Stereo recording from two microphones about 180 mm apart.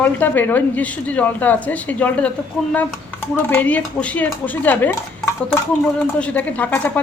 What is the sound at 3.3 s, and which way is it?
Speech, 10° left (ahead or behind).